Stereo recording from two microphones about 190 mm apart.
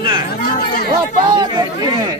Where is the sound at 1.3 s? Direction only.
20° right (ahead or behind).